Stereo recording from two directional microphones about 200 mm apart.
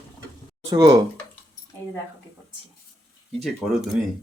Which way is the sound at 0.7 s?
15° right (ahead or behind).